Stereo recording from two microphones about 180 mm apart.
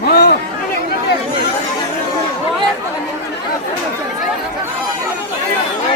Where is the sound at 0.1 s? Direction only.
60° left (ahead or behind).